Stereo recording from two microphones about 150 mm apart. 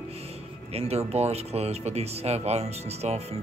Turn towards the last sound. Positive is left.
turn(degrees=-45)  # may be behind; listen again after turning